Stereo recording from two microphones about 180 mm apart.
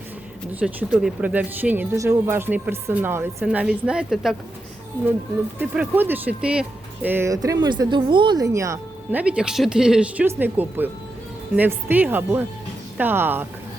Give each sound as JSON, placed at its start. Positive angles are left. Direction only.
{"t": 0.6, "sound": "speech", "side_deg": -5}
{"t": 5.5, "sound": "speech", "side_deg": -10}
{"t": 9.2, "sound": "speech", "side_deg": -5}